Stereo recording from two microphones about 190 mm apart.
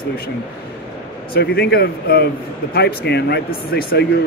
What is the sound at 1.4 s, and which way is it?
Speech, 55° left (ahead or behind).